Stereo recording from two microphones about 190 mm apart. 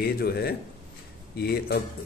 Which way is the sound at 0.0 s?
55° left (ahead or behind).